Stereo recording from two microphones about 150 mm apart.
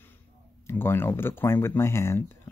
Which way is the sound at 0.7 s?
15° left (ahead or behind).